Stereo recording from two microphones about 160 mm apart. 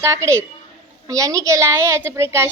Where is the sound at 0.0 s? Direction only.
20° right (ahead or behind).